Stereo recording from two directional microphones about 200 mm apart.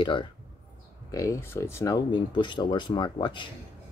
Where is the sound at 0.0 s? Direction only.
25° left (ahead or behind).